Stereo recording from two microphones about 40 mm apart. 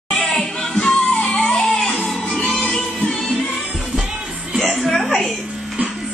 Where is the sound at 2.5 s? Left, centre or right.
Left.